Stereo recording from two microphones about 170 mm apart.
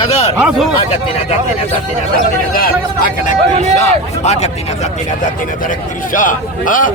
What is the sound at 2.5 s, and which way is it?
Speech, 60° left (ahead or behind).